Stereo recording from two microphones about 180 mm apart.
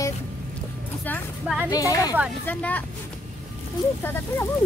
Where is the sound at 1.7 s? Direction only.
20° left (ahead or behind).